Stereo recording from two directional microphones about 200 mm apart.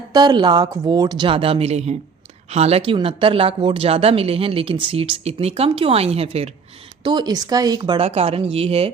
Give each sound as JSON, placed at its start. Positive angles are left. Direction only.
{"t": 0.1, "sound": "speech", "side_deg": -20}